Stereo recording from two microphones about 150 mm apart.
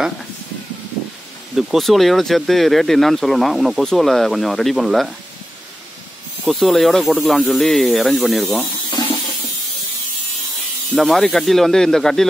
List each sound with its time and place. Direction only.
1.6 s speech: centre (ahead or behind)
6.4 s speech: centre (ahead or behind)
8.9 s a sound: 30° left (ahead or behind)
11.0 s speech: centre (ahead or behind)